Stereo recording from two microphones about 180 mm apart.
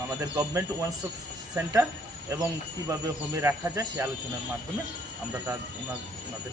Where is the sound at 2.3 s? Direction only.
15° right (ahead or behind).